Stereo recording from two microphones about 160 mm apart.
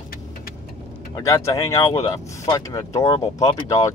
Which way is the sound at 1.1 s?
20° left (ahead or behind).